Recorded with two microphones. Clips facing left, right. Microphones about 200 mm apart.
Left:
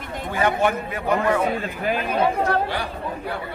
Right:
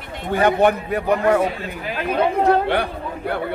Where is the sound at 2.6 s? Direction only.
60° right (ahead or behind).